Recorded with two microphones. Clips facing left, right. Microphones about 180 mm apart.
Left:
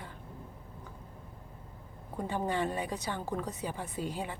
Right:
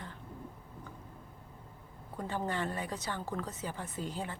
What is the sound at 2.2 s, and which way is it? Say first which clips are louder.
A woman's voice: left 3 dB; 15° left (ahead or behind).